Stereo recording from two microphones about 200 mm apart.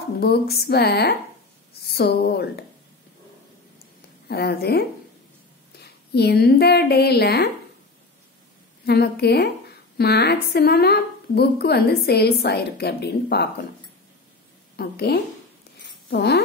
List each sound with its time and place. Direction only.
0.2 s a woman's voice: 50° left (ahead or behind)
4.3 s a woman's voice: 50° left (ahead or behind)
8.8 s a woman's voice: 55° left (ahead or behind)
14.8 s a woman's voice: 50° left (ahead or behind)